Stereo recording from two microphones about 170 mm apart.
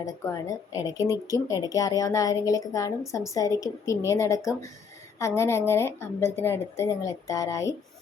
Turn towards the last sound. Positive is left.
turn(degrees=20)  # may be behind; listen again after turning